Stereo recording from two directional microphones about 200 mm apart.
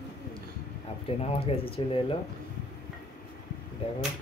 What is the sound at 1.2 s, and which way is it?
Speech, 30° left (ahead or behind).